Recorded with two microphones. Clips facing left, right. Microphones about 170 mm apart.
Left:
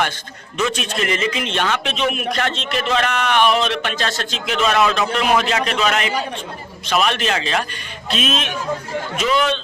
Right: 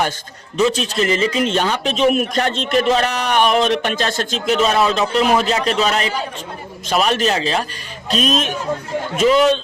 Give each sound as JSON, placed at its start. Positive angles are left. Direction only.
{"t": 0.5, "sound": "a man's voice", "side_deg": -35}